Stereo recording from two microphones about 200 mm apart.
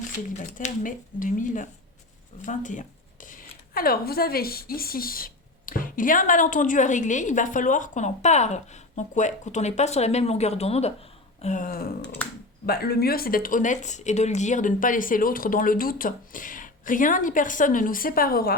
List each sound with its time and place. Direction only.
0.3 s speech: 40° left (ahead or behind)